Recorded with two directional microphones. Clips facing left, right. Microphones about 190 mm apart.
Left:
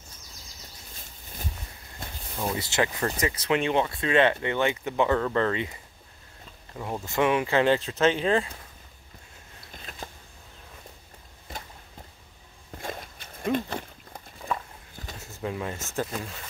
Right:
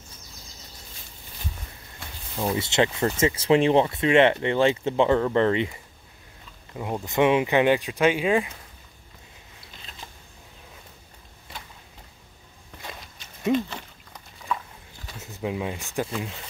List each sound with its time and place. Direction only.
2.4 s speech: 25° right (ahead or behind)
6.8 s speech: 20° right (ahead or behind)
12.7 s a sound: 50° left (ahead or behind)
15.1 s speech: 20° right (ahead or behind)